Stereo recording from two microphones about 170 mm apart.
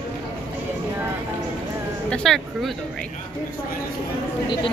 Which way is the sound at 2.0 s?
5° left (ahead or behind).